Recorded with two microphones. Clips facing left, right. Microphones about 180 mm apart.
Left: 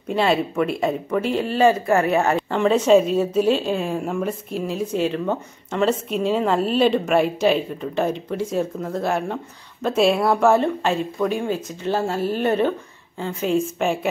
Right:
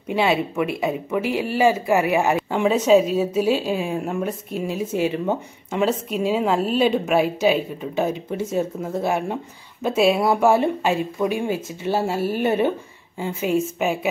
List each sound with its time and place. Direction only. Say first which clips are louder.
0.1 s a woman's voice: left 1 dB; 5° right (ahead or behind)